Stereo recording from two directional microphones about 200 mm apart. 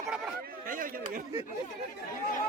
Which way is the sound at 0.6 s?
45° right (ahead or behind).